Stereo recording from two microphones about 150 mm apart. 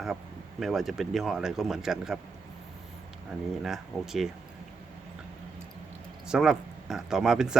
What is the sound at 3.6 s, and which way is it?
Speech, centre (ahead or behind).